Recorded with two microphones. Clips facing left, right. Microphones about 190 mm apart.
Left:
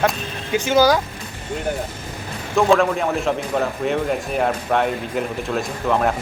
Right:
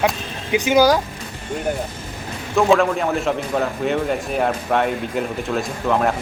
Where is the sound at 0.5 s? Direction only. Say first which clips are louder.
Right 1 dB; 15° right (ahead or behind).